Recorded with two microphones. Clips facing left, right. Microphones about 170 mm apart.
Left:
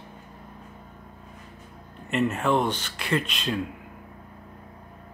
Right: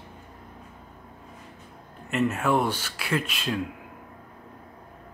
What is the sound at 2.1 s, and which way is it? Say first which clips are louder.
Speech: even; centre (ahead or behind).